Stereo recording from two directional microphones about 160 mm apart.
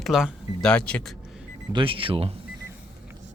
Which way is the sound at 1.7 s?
30° right (ahead or behind).